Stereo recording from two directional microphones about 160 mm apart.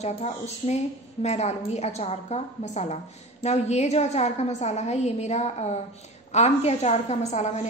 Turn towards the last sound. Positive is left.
turn(degrees=45)  # may be behind; listen again after turning